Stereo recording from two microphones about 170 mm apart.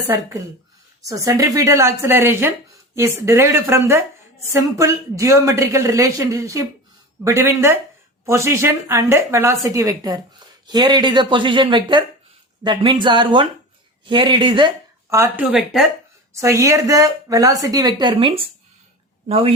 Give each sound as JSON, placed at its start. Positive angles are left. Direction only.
{"t": 0.1, "sound": "speech", "side_deg": -20}
{"t": 15.1, "sound": "speech", "side_deg": -15}
{"t": 15.5, "sound": "speech", "side_deg": 0}
{"t": 16.4, "sound": "speech", "side_deg": -15}